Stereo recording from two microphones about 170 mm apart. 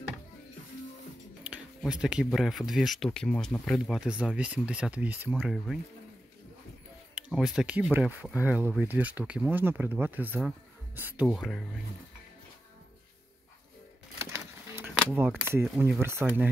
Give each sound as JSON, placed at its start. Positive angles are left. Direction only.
{"t": 1.4, "sound": "speech", "side_deg": -5}
{"t": 7.2, "sound": "speech", "side_deg": -5}
{"t": 11.2, "sound": "speech", "side_deg": 0}
{"t": 14.1, "sound": "typewriter", "side_deg": -15}
{"t": 15.1, "sound": "speech", "side_deg": -15}